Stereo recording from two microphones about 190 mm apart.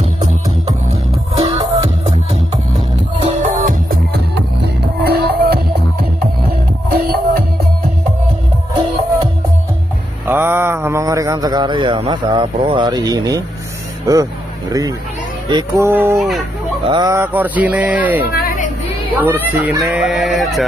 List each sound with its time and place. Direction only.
0.0 s music: 35° right (ahead or behind)
3.2 s music: 45° right (ahead or behind)
6.9 s music: 55° right (ahead or behind)
10.2 s mantra: 10° right (ahead or behind)
14.1 s speech: 20° right (ahead or behind)
16.2 s fowl: centre (ahead or behind)
16.8 s speech: 20° right (ahead or behind)
18.3 s a sound: 50° left (ahead or behind)
19.1 s speech: 10° right (ahead or behind)
19.8 s fowl: 5° right (ahead or behind)